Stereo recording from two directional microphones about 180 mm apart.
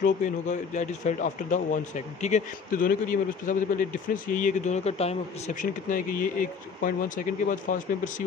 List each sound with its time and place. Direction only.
0.0 s speech: 45° left (ahead or behind)